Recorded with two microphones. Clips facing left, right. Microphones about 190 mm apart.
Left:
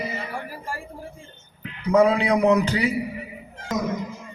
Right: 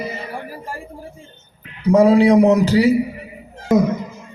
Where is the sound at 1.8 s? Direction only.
35° right (ahead or behind).